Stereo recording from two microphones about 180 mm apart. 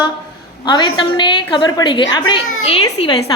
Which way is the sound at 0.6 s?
25° left (ahead or behind).